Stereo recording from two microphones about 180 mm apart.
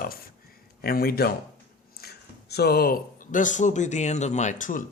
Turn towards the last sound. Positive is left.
turn(degrees=45)  # may be behind; listen again after turning